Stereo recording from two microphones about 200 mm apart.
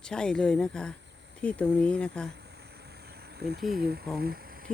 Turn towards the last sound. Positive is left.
turn(degrees=-45)  # may be behind; listen again after turning